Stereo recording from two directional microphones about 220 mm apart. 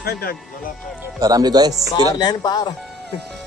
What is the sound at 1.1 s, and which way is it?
Speech, 15° right (ahead or behind).